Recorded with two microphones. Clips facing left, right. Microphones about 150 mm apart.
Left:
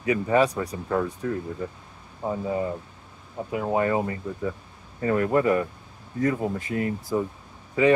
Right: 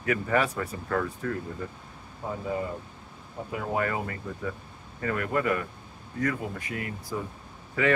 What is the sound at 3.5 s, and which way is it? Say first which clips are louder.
Speech: left 6 dB; 25° left (ahead or behind).